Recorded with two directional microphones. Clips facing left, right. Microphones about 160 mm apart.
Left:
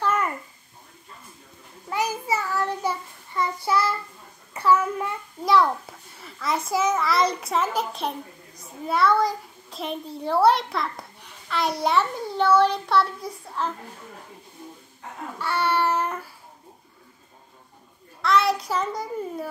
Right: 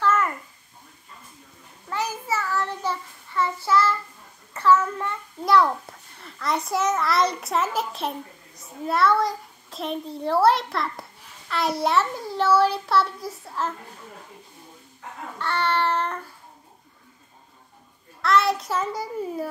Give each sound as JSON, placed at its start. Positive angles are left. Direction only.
{"t": 0.0, "sound": "babbling", "side_deg": 15}
{"t": 1.9, "sound": "child singing", "side_deg": 15}
{"t": 4.6, "sound": "a child's voice", "side_deg": 15}
{"t": 5.4, "sound": "a child's voice", "side_deg": 0}
{"t": 15.3, "sound": "child singing", "side_deg": 10}
{"t": 18.2, "sound": "a child's voice", "side_deg": 0}